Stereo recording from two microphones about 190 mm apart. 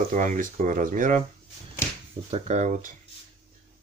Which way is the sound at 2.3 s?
40° right (ahead or behind).